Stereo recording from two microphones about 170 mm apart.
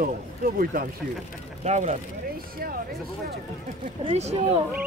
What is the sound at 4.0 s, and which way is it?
Speech, 35° right (ahead or behind).